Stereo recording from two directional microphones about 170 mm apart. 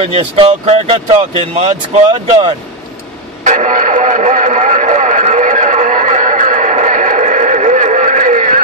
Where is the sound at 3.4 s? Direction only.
50° right (ahead or behind).